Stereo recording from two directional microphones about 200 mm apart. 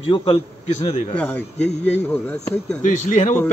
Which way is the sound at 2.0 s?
10° left (ahead or behind).